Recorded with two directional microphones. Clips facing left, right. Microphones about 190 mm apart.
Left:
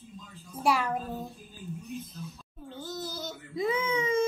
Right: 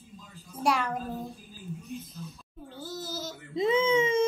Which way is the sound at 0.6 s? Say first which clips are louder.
Even; 5° left (ahead or behind).